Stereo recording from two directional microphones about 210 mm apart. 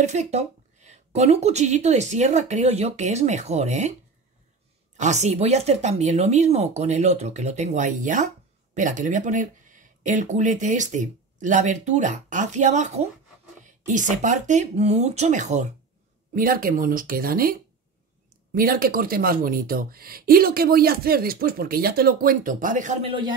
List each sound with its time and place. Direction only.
0.0 s speech: 35° right (ahead or behind)
4.9 s speech: 35° right (ahead or behind)